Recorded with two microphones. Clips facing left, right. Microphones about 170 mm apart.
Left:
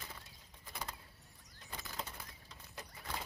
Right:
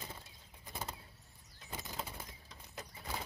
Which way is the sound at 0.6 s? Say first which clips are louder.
Right 2 dB; 25° right (ahead or behind).